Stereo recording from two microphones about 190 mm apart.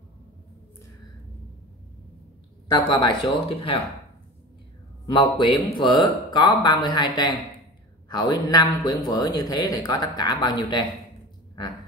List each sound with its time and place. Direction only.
2.7 s a man's voice: 25° left (ahead or behind)
5.0 s a man's voice: 25° left (ahead or behind)